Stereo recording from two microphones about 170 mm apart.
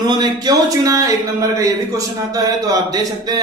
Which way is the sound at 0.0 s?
25° right (ahead or behind).